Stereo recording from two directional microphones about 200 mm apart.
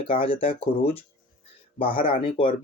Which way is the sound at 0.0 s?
25° left (ahead or behind).